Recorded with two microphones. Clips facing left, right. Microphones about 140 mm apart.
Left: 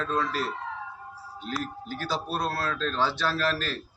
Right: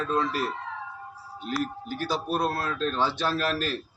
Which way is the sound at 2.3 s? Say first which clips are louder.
Right 3 dB; 15° right (ahead or behind).